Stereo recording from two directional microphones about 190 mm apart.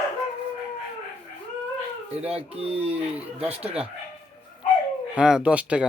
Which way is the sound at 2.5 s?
30° right (ahead or behind).